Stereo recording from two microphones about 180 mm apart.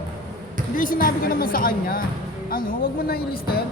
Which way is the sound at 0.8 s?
50° left (ahead or behind).